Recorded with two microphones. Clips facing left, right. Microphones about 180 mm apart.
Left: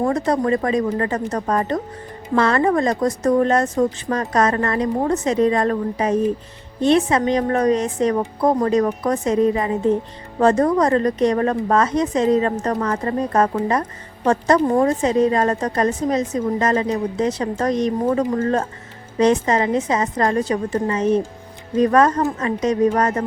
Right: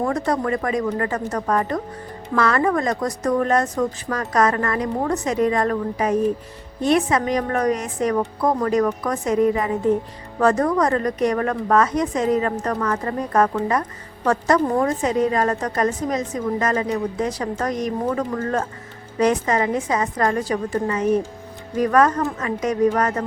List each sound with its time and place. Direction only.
0.0 s a woman's voice: 25° left (ahead or behind)